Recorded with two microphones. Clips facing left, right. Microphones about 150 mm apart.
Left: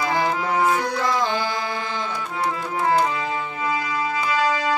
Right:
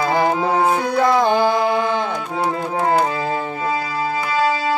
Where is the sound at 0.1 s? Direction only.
55° right (ahead or behind).